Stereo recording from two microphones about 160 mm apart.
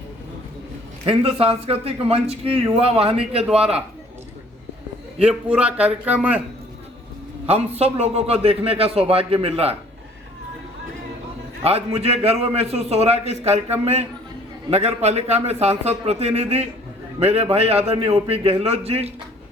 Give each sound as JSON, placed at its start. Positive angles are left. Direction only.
{"t": 1.0, "sound": "a man's voice", "side_deg": -35}
{"t": 5.2, "sound": "a man's voice", "side_deg": -5}
{"t": 7.4, "sound": "a man's voice", "side_deg": -40}
{"t": 11.6, "sound": "a man's voice", "side_deg": -40}